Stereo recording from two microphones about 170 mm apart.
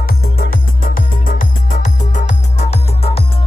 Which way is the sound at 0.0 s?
60° left (ahead or behind).